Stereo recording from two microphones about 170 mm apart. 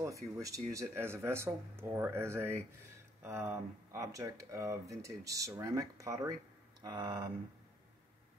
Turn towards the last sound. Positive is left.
turn(degrees=-25)  # may be behind; listen again after turning